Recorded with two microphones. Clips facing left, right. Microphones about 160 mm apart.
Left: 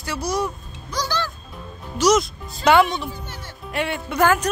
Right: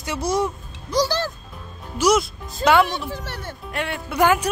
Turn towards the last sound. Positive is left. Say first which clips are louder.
# even
turn(degrees=-15)  # may be behind; listen again after turning